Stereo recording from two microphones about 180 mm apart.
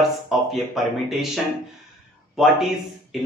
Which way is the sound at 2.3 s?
Centre (ahead or behind).